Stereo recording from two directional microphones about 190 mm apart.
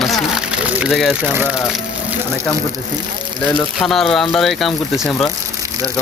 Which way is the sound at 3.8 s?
Centre (ahead or behind).